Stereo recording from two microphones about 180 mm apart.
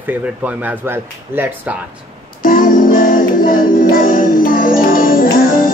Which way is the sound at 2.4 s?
50° left (ahead or behind).